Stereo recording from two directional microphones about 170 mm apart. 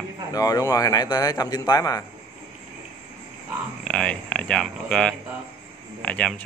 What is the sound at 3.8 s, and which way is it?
A man's voice, 5° left (ahead or behind).